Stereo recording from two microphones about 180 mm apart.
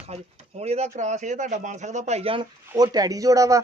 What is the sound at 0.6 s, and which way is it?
Speech, 40° right (ahead or behind).